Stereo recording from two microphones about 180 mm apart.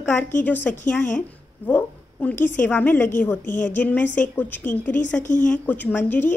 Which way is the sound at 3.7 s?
10° left (ahead or behind).